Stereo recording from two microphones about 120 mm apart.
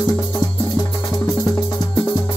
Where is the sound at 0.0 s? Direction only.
30° left (ahead or behind).